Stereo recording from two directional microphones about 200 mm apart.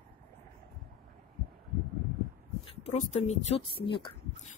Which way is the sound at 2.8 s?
35° left (ahead or behind).